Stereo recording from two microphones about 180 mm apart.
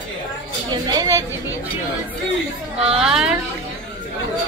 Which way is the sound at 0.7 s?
20° right (ahead or behind).